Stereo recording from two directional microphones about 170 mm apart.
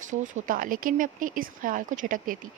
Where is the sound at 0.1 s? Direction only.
50° right (ahead or behind).